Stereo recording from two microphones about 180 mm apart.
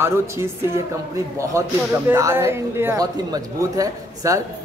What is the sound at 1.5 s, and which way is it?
A man's voice, 15° right (ahead or behind).